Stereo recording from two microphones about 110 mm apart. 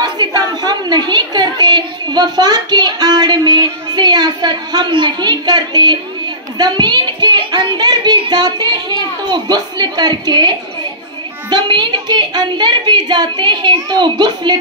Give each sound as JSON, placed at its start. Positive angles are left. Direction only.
{"t": 0.0, "sound": "a woman's voice", "side_deg": -40}
{"t": 11.5, "sound": "a child's voice", "side_deg": -45}